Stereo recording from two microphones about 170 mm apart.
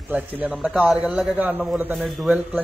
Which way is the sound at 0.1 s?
10° right (ahead or behind).